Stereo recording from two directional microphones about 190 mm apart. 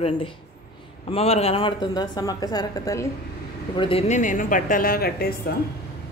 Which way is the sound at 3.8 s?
30° left (ahead or behind).